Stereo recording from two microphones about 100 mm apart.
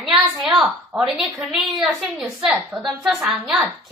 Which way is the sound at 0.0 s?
Centre (ahead or behind).